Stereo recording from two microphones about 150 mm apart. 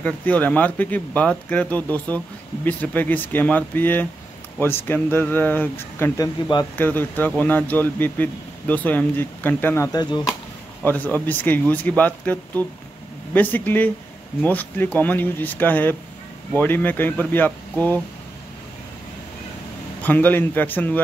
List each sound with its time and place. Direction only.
0.0 s speech: 10° left (ahead or behind)
9.9 s speech: 25° left (ahead or behind)
10.9 s speech: 10° left (ahead or behind)
20.0 s speech: 10° left (ahead or behind)